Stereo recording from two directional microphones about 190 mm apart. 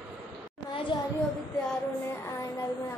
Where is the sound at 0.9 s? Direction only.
25° left (ahead or behind).